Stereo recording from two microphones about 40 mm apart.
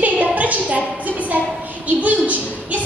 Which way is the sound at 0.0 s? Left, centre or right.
Right.